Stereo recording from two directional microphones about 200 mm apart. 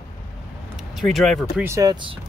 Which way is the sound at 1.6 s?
15° right (ahead or behind).